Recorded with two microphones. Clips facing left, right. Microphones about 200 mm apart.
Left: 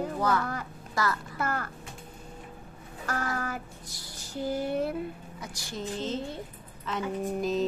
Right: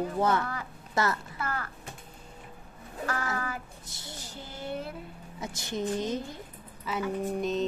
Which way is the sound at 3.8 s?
25° right (ahead or behind).